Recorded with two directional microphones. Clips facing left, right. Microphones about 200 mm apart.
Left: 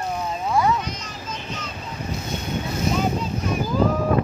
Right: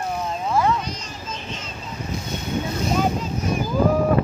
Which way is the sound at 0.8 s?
30° right (ahead or behind).